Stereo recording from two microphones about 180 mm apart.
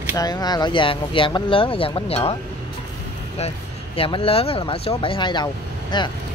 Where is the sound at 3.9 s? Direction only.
30° left (ahead or behind).